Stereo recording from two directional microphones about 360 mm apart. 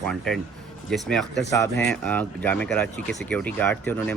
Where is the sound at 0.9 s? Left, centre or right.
Centre.